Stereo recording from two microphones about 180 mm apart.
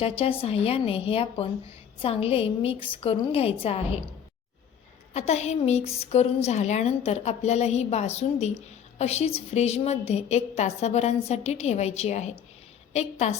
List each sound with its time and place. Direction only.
0.0 s a woman's voice: 30° left (ahead or behind)
5.1 s a woman's voice: 40° left (ahead or behind)